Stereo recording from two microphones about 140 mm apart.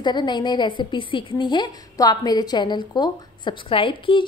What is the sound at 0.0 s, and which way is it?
A woman's voice, 30° left (ahead or behind).